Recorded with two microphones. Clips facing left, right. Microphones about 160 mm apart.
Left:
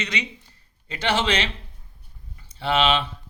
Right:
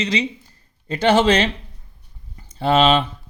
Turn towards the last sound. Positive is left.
turn(degrees=-45)  # may be behind; listen again after turning